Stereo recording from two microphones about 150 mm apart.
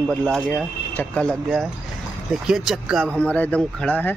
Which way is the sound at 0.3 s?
10° left (ahead or behind).